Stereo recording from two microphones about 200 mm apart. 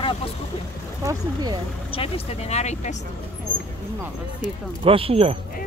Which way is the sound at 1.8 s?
30° left (ahead or behind).